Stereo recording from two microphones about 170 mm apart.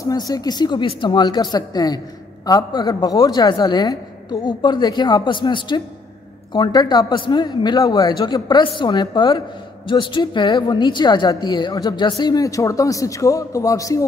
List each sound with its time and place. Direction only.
0.0 s a woman's voice: 20° left (ahead or behind)